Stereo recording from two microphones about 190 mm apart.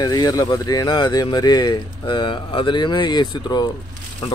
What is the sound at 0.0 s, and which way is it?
Speech, 20° left (ahead or behind).